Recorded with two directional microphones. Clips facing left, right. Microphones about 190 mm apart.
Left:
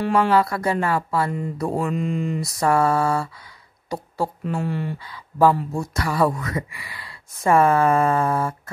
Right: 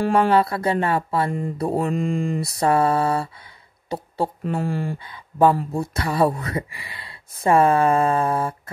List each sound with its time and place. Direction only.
0.0 s speech: 30° right (ahead or behind)
2.0 s speech: 45° right (ahead or behind)
2.4 s speech: 25° right (ahead or behind)
4.6 s speech: 45° right (ahead or behind)
4.9 s speech: 25° right (ahead or behind)